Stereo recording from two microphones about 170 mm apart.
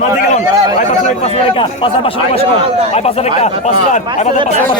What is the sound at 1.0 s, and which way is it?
A man's voice, 35° left (ahead or behind).